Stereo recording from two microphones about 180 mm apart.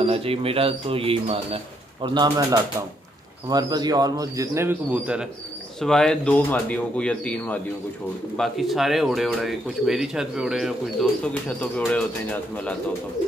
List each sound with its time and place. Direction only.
0.0 s speech: 30° right (ahead or behind); by 12.7 s 5° left (ahead or behind)